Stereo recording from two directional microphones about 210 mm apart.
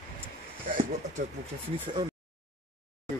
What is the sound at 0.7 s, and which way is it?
Speech, 35° right (ahead or behind).